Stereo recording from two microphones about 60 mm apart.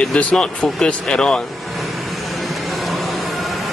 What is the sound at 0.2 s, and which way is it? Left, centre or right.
Speech, left.